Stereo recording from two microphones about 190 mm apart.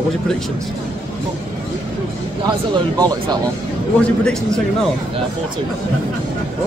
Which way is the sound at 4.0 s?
5° left (ahead or behind).